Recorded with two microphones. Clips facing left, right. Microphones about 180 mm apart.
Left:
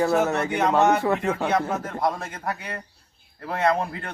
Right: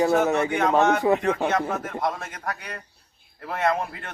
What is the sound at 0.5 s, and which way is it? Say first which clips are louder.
A man's voice: left 4 dB; centre (ahead or behind).